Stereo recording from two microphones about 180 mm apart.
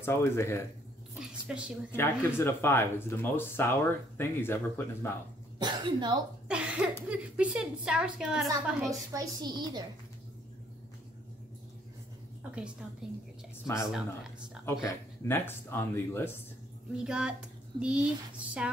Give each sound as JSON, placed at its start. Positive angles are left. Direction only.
{"t": 0.0, "sound": "speech", "side_deg": 15}
{"t": 1.5, "sound": "a woman's voice", "side_deg": -5}
{"t": 1.9, "sound": "speech", "side_deg": 15}
{"t": 5.6, "sound": "a woman's voice", "side_deg": -25}
{"t": 6.5, "sound": "a sound", "side_deg": -5}
{"t": 7.1, "sound": "a woman's voice", "side_deg": -5}
{"t": 9.1, "sound": "a woman's voice", "side_deg": -20}
{"t": 12.4, "sound": "a woman's voice", "side_deg": -5}
{"t": 14.8, "sound": "speech", "side_deg": 10}
{"t": 16.9, "sound": "a woman's voice", "side_deg": -5}